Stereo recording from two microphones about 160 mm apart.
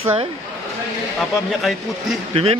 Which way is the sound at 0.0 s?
35° right (ahead or behind).